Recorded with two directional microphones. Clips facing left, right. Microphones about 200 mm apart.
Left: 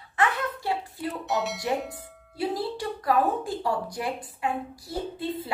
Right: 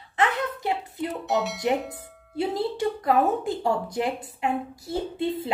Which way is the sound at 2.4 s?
25° right (ahead or behind).